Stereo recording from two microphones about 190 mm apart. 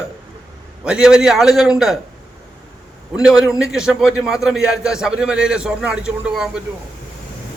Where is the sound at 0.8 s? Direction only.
5° right (ahead or behind).